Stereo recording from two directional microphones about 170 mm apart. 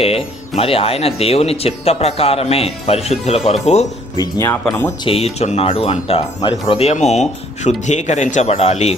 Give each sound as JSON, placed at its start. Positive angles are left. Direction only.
{"t": 0.0, "sound": "speech", "side_deg": 35}
{"t": 4.2, "sound": "speech", "side_deg": 15}
{"t": 5.0, "sound": "speech", "side_deg": 35}